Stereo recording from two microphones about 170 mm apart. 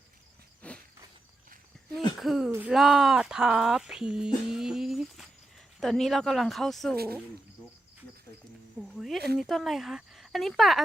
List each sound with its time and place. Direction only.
0.6 s cricket: 10° left (ahead or behind)
2.1 s speech: centre (ahead or behind)
2.5 s speech: 10° right (ahead or behind)
2.7 s speech: centre (ahead or behind)
4.4 s a sound: 5° right (ahead or behind)
6.9 s speech: 65° right (ahead or behind)
9.0 s speech: centre (ahead or behind)